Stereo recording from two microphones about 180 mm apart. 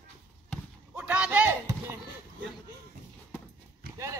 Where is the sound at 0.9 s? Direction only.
5° right (ahead or behind).